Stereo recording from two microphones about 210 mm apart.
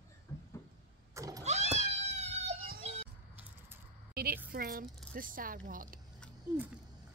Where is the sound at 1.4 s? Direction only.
30° right (ahead or behind).